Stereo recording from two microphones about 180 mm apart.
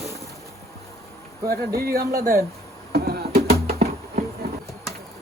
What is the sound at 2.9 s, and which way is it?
Music, 60° right (ahead or behind).